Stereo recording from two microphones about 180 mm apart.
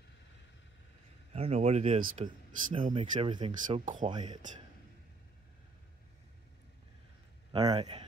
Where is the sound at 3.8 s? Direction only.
45° right (ahead or behind).